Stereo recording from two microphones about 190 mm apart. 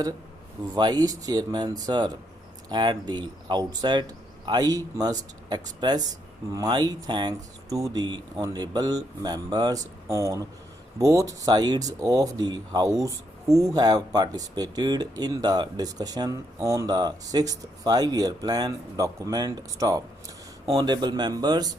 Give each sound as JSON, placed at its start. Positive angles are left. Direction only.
{"t": 0.7, "sound": "speech", "side_deg": -20}